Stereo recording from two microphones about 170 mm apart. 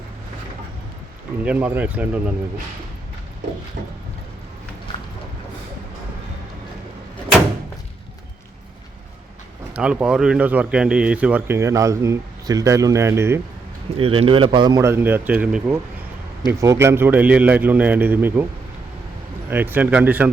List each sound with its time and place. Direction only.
1.5 s speech: 10° right (ahead or behind)
9.7 s speech: 5° right (ahead or behind)
13.9 s a man's voice: 35° right (ahead or behind); by 18.4 s 10° right (ahead or behind)
19.5 s speech: 10° right (ahead or behind)